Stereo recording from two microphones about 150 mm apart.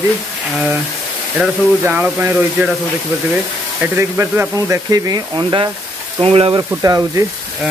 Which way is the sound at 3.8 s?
15° right (ahead or behind).